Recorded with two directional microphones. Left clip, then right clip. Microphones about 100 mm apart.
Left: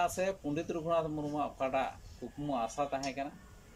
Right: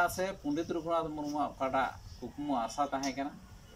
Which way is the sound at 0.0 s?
30° left (ahead or behind).